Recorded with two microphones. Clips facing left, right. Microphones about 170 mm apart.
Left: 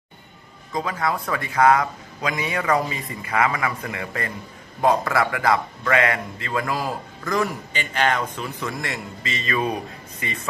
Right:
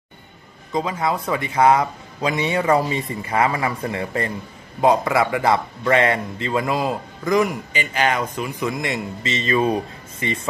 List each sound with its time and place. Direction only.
0.7 s a man's voice: 20° right (ahead or behind)